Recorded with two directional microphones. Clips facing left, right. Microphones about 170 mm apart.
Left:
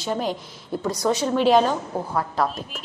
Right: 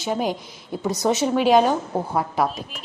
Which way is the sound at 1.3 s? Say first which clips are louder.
Right 1 dB; 5° right (ahead or behind).